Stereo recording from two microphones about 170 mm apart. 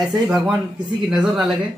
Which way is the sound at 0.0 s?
Centre (ahead or behind).